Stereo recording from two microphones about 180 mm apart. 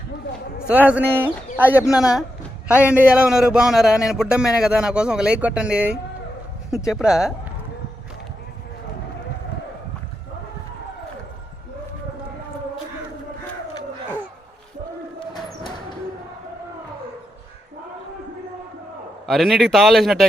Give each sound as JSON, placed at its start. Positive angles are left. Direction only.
{"t": 0.7, "sound": "speech", "side_deg": -10}
{"t": 19.2, "sound": "speech", "side_deg": 0}